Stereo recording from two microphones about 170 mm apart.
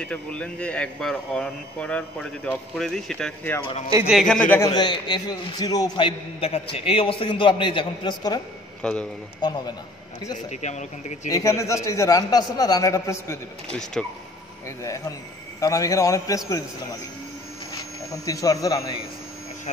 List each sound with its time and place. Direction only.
0.0 s speech: 5° left (ahead or behind)
4.7 s a man's voice: 25° left (ahead or behind)
8.8 s speech: 5° left (ahead or behind)
9.4 s a man's voice: 25° left (ahead or behind)
10.5 s speech: 45° left (ahead or behind)
11.2 s a man's voice: 20° left (ahead or behind)
13.7 s speech: 5° left (ahead or behind)
14.8 s a man's voice: 20° left (ahead or behind)
18.1 s a man's voice: 20° left (ahead or behind)